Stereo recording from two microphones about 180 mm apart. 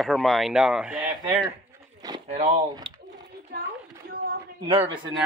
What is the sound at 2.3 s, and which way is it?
Speech, 35° right (ahead or behind).